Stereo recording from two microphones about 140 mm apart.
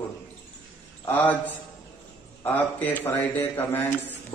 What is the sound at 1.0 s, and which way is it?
A man's voice, 15° left (ahead or behind).